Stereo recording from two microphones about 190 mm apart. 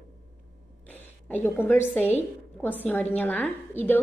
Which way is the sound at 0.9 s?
10° left (ahead or behind).